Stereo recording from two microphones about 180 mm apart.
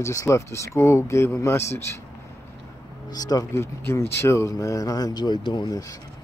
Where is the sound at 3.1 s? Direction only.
20° left (ahead or behind).